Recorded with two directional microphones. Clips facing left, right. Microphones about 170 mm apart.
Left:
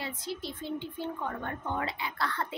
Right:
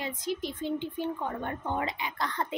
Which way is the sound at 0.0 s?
15° right (ahead or behind).